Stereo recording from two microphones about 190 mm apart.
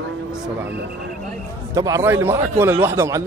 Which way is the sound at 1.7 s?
15° right (ahead or behind).